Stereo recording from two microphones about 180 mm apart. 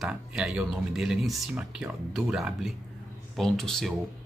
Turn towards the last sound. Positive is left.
turn(degrees=0)  # may be behind; listen again after turning